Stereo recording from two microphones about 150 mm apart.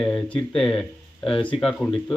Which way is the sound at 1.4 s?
35° left (ahead or behind).